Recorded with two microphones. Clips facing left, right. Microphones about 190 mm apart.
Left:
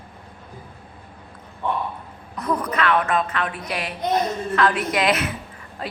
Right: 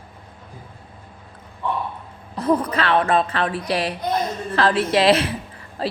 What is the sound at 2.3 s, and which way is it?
Speech, 30° right (ahead or behind).